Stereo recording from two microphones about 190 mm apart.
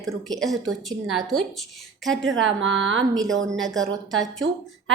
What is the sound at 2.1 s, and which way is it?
Speech, 90° right.